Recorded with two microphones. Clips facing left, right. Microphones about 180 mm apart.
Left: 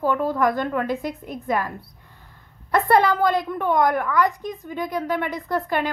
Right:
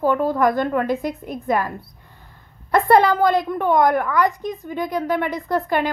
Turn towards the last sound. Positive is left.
turn(degrees=-35)  # may be behind; listen again after turning